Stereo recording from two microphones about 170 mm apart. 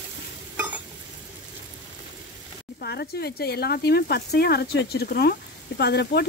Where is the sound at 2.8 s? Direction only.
70° left (ahead or behind).